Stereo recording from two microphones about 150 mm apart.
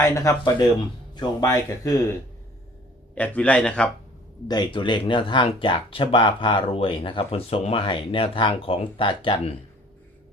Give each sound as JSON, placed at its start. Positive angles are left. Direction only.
{"t": 0.0, "sound": "speech", "side_deg": 20}
{"t": 3.2, "sound": "a man's voice", "side_deg": 10}
{"t": 4.4, "sound": "speech", "side_deg": 30}